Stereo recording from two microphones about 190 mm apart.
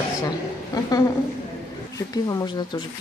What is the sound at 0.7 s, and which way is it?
Speech, 20° left (ahead or behind).